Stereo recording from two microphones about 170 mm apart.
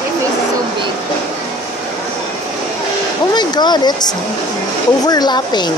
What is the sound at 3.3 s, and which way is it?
A woman's voice, 25° left (ahead or behind).